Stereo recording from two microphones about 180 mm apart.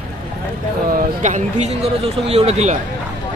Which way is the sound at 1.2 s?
40° right (ahead or behind).